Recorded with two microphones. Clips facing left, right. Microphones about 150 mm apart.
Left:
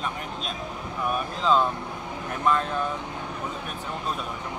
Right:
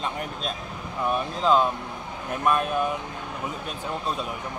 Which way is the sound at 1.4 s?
15° right (ahead or behind).